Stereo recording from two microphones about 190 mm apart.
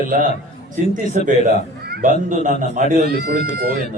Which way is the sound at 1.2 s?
45° right (ahead or behind).